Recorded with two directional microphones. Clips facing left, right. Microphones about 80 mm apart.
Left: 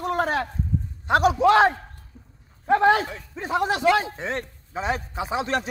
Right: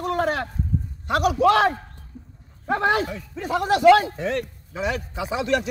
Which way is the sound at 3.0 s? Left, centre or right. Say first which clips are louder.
Right 3 dB; left.